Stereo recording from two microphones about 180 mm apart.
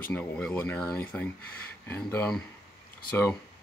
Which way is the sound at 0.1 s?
5° left (ahead or behind).